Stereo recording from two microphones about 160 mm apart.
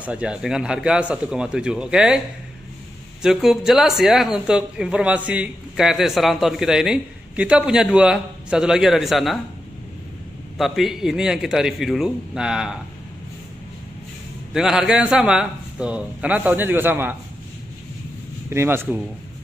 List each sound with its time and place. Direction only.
0.0 s speech: 5° right (ahead or behind)
10.6 s speech: centre (ahead or behind)
14.5 s a man's voice: 5° right (ahead or behind)
18.5 s a man's voice: 15° right (ahead or behind)